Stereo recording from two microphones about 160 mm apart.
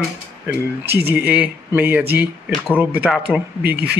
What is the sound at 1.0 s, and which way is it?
Speech, 10° right (ahead or behind).